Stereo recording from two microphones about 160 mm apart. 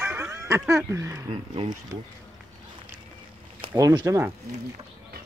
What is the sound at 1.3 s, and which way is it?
Speech, 30° right (ahead or behind).